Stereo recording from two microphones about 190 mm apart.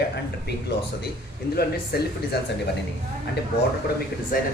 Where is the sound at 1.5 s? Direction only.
55° left (ahead or behind).